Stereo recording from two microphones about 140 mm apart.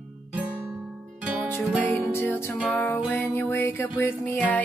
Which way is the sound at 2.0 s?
15° left (ahead or behind).